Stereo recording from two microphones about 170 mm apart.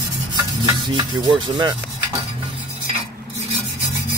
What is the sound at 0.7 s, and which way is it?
Cutlery, 25° right (ahead or behind).